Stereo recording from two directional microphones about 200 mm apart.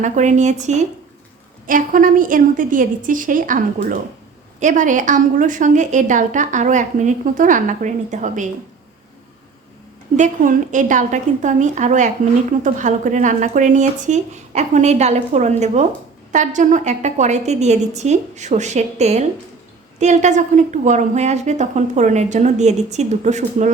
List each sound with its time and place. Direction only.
0.0 s a woman's voice: 35° right (ahead or behind)
10.2 s a woman's voice: 40° right (ahead or behind)